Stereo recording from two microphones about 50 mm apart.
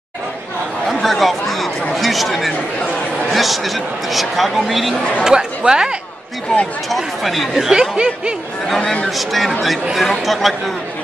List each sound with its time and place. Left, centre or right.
0.8 s chatter: centre
2.0 s speech: centre
5.2 s speech: centre
6.9 s speech: centre
7.7 s speech: centre
8.6 s speech: centre